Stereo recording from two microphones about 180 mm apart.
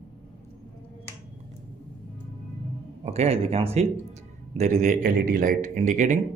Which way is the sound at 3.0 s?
35° right (ahead or behind).